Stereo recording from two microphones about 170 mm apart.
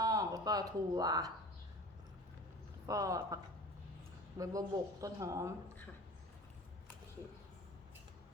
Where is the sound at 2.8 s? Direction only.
20° right (ahead or behind).